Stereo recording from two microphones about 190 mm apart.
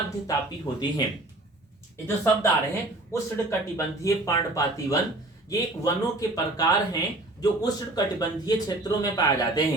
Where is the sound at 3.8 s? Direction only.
15° left (ahead or behind).